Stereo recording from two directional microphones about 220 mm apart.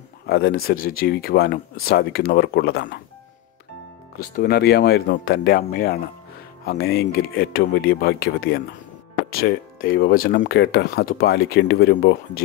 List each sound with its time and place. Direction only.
0.3 s speech: 45° left (ahead or behind)
4.2 s speech: 45° left (ahead or behind)